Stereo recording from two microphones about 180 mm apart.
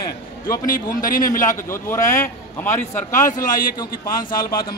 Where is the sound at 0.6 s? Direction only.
50° left (ahead or behind).